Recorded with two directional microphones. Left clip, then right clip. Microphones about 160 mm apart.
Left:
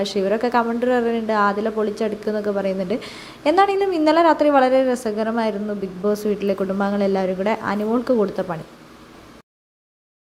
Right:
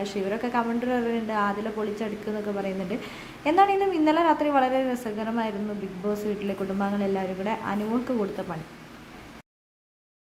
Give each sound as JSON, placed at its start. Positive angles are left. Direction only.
{"t": 0.0, "sound": "a woman's voice", "side_deg": 25}